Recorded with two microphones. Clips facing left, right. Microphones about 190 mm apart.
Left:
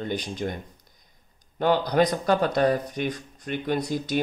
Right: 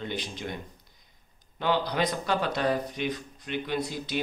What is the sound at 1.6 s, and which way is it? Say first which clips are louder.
Speech: left 6 dB; 45° left (ahead or behind).